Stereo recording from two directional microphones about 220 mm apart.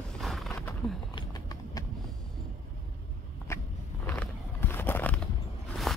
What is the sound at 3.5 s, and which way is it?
Vehicle, 10° left (ahead or behind).